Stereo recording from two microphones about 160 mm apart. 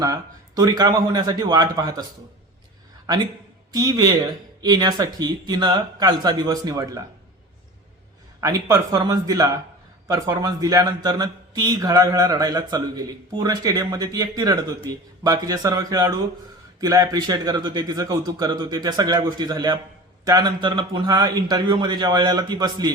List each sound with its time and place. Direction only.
0.0 s speech: 25° right (ahead or behind)
3.7 s speech: 25° right (ahead or behind)
8.4 s speech: 20° right (ahead or behind)